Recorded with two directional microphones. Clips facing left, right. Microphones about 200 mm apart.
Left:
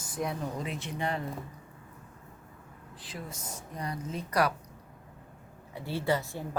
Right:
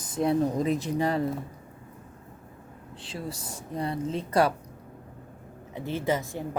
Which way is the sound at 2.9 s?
30° right (ahead or behind).